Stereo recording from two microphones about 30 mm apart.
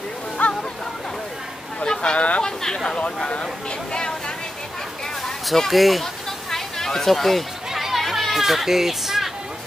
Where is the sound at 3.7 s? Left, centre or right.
Left.